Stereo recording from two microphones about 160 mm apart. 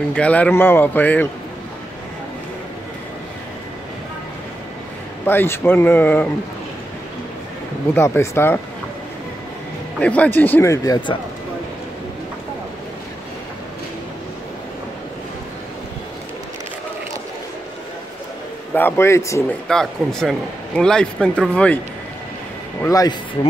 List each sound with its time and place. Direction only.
0.1 s speech: 10° left (ahead or behind)
5.2 s speech: 15° left (ahead or behind)
7.9 s speech: 15° left (ahead or behind)
9.9 s speech: 10° left (ahead or behind); by 11.1 s 25° left (ahead or behind)
18.8 s speech: 15° left (ahead or behind)
19.7 s speech: 5° left (ahead or behind)
22.8 s speech: 20° left (ahead or behind)